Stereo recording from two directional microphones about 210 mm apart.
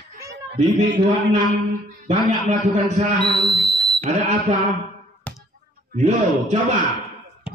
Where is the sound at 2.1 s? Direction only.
35° right (ahead or behind).